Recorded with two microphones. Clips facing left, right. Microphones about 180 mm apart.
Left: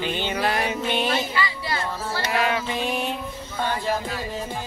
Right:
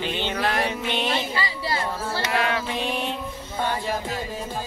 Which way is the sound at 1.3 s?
35° right (ahead or behind).